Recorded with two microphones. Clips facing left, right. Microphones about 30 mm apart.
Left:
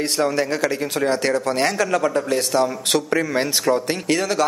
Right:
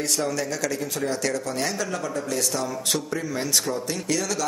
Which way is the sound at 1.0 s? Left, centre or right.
Left.